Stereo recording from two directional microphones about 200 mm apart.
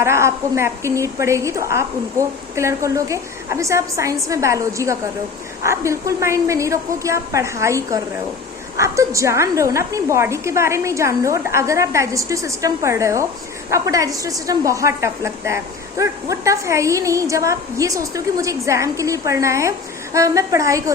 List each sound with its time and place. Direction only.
0.0 s a woman's voice: 15° right (ahead or behind)